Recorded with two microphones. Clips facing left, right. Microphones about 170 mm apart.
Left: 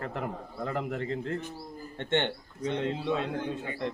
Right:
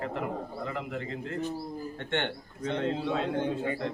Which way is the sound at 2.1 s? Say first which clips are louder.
Left 4 dB; 20° left (ahead or behind).